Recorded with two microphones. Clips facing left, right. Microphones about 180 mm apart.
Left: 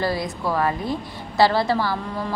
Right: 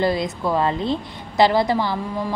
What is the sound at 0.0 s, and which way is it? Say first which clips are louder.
A woman's voice: right 3 dB; 20° right (ahead or behind).